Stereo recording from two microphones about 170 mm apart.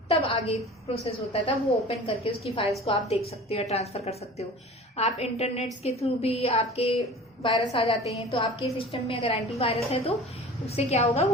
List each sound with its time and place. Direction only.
0.1 s a woman's voice: 35° left (ahead or behind)